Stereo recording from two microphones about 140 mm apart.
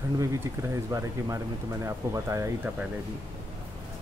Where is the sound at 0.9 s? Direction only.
25° right (ahead or behind).